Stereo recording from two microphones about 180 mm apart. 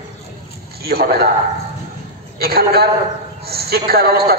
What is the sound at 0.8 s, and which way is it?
Speech, 55° right (ahead or behind).